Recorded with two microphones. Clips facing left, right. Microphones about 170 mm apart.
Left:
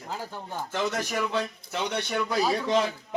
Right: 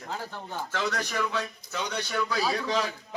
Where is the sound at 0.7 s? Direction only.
20° left (ahead or behind).